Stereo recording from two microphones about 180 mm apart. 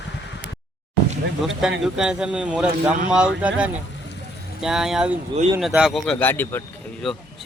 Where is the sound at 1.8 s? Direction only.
5° right (ahead or behind).